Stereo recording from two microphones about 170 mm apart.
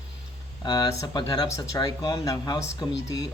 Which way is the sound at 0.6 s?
25° left (ahead or behind).